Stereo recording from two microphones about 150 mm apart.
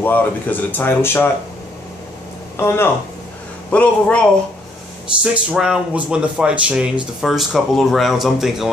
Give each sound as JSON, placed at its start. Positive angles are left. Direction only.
{"t": 0.0, "sound": "speech", "side_deg": 10}
{"t": 2.5, "sound": "speech", "side_deg": 15}
{"t": 5.2, "sound": "speech", "side_deg": -5}